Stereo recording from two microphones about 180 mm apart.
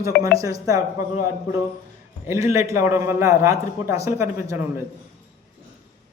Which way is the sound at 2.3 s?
15° right (ahead or behind).